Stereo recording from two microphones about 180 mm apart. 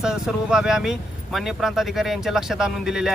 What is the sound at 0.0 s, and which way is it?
A man's voice, 5° right (ahead or behind).